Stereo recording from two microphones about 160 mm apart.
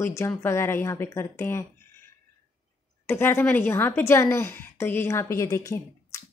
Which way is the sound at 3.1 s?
15° left (ahead or behind).